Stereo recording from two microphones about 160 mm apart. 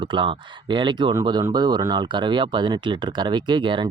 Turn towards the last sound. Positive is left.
turn(degrees=-30)  # may be behind; listen again after turning